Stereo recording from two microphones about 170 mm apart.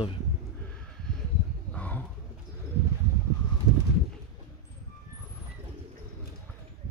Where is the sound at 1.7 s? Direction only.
10° left (ahead or behind).